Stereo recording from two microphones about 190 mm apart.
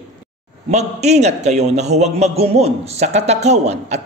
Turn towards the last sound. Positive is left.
turn(degrees=-35)  # may be behind; listen again after turning